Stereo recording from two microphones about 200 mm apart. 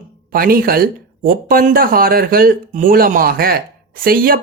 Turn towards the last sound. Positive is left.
turn(degrees=-45)  # may be behind; listen again after turning